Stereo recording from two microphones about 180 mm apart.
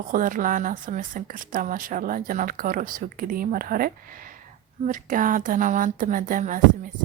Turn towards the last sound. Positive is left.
turn(degrees=-50)  # may be behind; listen again after turning